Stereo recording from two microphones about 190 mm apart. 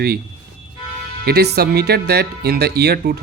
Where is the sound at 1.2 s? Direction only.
60° right (ahead or behind).